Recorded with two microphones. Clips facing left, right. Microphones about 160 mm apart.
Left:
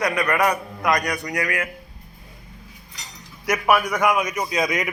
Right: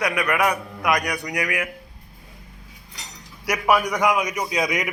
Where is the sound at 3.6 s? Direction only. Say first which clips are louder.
Even; 15° right (ahead or behind).